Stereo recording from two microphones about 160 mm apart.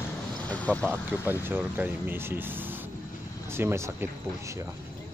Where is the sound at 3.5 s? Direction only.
15° right (ahead or behind).